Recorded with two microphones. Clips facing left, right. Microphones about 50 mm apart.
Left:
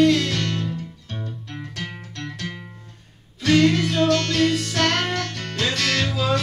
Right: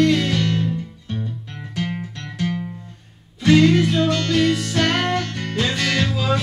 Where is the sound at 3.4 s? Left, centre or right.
Centre.